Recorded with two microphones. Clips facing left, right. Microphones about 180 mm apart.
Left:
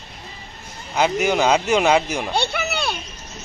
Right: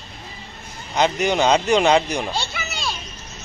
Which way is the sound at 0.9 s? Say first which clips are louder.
Even; 5° left (ahead or behind).